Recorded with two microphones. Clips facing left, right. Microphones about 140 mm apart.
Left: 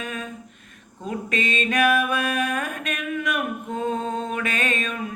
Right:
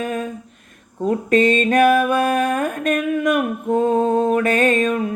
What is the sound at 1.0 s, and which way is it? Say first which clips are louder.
Mantra: right 11 dB; 50° right (ahead or behind).